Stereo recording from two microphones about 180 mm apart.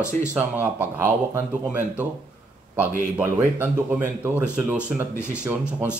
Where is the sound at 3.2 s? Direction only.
10° right (ahead or behind).